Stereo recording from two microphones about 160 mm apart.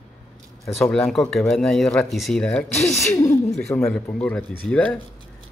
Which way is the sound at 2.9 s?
15° left (ahead or behind).